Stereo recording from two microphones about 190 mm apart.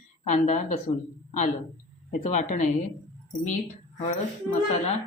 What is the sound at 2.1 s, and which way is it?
Speech, 40° left (ahead or behind).